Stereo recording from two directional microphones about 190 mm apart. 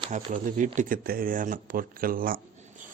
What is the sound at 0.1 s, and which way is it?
Speech, 40° right (ahead or behind).